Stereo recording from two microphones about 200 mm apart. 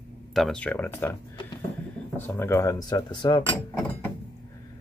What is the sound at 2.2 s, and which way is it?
Speech, 10° left (ahead or behind).